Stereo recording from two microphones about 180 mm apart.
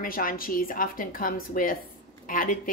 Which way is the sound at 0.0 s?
50° left (ahead or behind).